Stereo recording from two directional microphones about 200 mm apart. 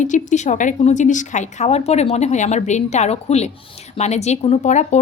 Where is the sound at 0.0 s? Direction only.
40° left (ahead or behind).